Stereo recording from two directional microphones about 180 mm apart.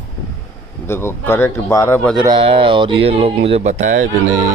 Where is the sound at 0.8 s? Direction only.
15° left (ahead or behind).